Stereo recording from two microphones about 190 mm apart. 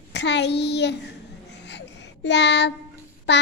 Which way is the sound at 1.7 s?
65° left (ahead or behind).